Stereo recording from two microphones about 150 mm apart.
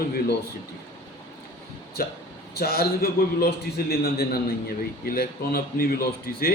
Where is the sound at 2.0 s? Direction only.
85° left.